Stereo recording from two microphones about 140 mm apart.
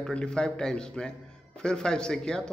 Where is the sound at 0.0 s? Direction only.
5° left (ahead or behind).